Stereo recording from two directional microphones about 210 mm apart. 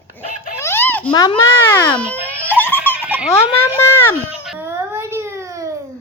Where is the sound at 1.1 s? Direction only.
20° left (ahead or behind).